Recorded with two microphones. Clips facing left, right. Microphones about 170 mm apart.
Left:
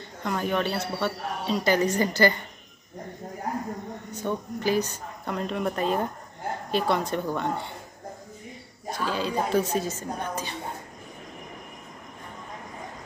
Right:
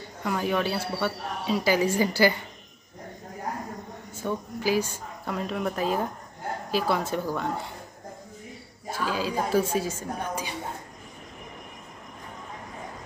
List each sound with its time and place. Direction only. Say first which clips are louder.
0.2 s speech: even; 5° right (ahead or behind)
4.2 s a woman's voice: left 1 dB; 5° right (ahead or behind)
8.9 s speech: even; 5° right (ahead or behind)